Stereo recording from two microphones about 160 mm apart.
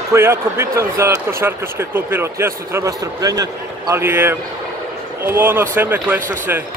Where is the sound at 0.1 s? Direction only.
15° right (ahead or behind).